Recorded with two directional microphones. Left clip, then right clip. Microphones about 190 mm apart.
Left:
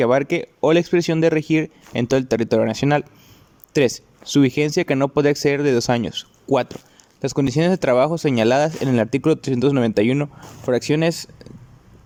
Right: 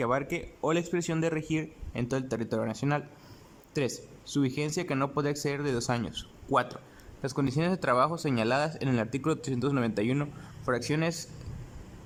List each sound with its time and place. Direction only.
0.0 s speech: 30° left (ahead or behind)